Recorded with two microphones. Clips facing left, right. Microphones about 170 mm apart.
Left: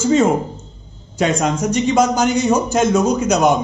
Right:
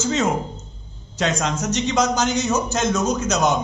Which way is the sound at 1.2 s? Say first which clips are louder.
Left 5 dB; 10° left (ahead or behind).